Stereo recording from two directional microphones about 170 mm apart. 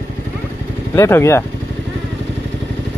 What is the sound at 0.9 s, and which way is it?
Speech, 15° left (ahead or behind).